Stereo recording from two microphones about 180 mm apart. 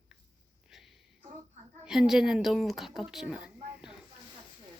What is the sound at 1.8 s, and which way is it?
A woman's voice, 5° right (ahead or behind).